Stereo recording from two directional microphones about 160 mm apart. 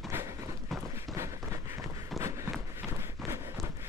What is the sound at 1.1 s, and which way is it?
Run, 20° right (ahead or behind).